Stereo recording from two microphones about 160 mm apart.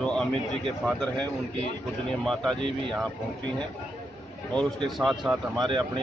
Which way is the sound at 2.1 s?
Centre (ahead or behind).